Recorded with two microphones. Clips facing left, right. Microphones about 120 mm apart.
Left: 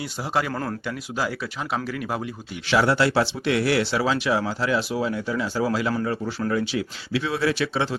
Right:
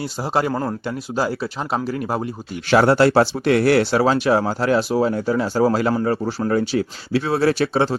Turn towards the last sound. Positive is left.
turn(degrees=-40)  # may be behind; listen again after turning